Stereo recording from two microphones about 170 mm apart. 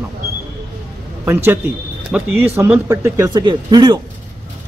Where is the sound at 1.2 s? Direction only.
15° right (ahead or behind).